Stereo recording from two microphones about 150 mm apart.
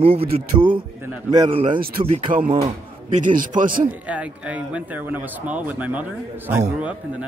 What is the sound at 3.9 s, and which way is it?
Speech, 10° right (ahead or behind).